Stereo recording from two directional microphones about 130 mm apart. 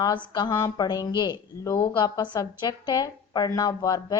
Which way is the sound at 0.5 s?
25° left (ahead or behind).